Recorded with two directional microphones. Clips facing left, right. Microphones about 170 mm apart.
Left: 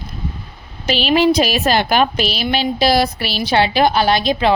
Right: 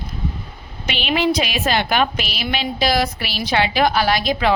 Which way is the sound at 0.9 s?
35° left (ahead or behind).